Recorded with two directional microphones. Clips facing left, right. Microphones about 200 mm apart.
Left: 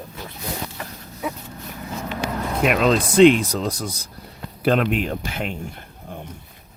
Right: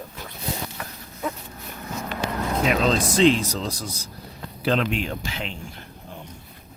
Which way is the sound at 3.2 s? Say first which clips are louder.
Left 7 dB; 60° left (ahead or behind).